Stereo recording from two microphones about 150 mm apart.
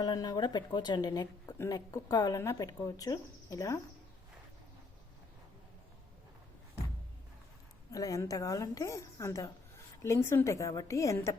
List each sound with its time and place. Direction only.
0.0 s a woman's voice: 25° left (ahead or behind)
7.9 s a woman's voice: 25° left (ahead or behind)